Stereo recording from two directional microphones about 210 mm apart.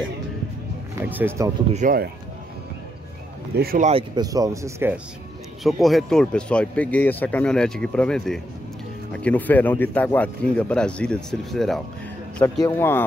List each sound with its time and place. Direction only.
0.9 s speech: 10° right (ahead or behind)
1.7 s speech: 40° right (ahead or behind)
3.5 s speech: 45° right (ahead or behind)
3.9 s speech: 20° right (ahead or behind)
5.6 s speech: centre (ahead or behind)